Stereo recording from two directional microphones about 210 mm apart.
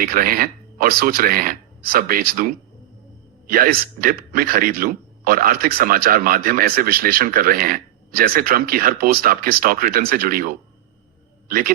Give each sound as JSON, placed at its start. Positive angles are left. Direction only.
{"t": 0.0, "sound": "a man's voice", "side_deg": -45}